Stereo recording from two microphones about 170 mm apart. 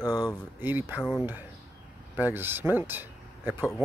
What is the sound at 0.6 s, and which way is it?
Speech, 10° right (ahead or behind).